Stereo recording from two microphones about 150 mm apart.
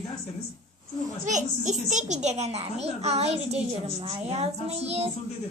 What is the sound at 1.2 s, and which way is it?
A child's voice, 55° right (ahead or behind).